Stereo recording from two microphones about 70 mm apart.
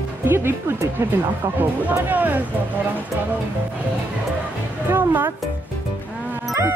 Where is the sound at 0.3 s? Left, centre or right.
Right.